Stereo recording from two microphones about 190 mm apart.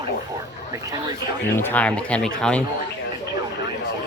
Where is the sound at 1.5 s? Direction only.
10° left (ahead or behind).